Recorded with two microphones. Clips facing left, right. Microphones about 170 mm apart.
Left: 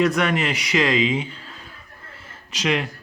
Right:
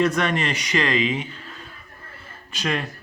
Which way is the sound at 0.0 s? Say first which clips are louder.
Left 1 dB; 5° left (ahead or behind).